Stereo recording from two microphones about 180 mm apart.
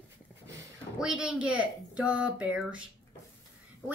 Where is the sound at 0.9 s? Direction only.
5° right (ahead or behind).